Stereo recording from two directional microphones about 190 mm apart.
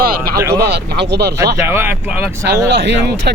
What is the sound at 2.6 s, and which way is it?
Speech, 65° right (ahead or behind).